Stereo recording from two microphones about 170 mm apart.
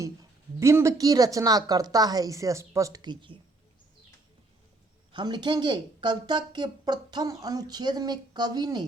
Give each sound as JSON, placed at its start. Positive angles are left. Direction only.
{"t": 0.0, "sound": "a woman's voice", "side_deg": -20}
{"t": 5.1, "sound": "a woman's voice", "side_deg": -25}